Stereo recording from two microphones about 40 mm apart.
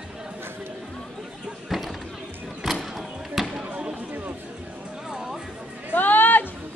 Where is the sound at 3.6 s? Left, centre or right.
Right.